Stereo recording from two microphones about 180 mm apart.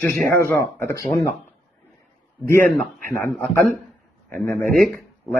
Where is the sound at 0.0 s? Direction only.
10° left (ahead or behind).